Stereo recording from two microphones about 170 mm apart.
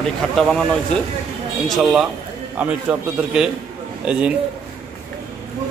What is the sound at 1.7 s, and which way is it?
A man's voice, centre (ahead or behind).